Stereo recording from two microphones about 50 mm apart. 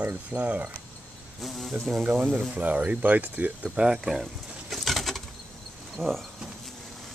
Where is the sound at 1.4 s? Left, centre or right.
Centre.